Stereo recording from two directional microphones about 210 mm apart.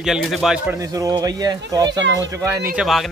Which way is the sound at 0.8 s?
15° right (ahead or behind).